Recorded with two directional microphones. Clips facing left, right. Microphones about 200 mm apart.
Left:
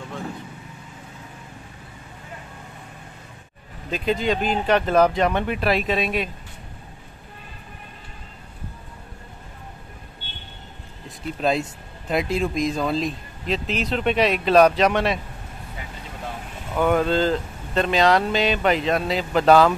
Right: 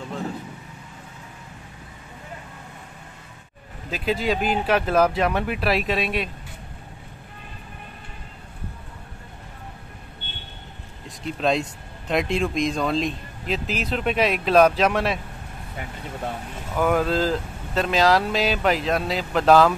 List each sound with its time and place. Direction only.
3.9 s speech: 5° right (ahead or behind)
11.1 s speech: centre (ahead or behind)
16.7 s speech: centre (ahead or behind)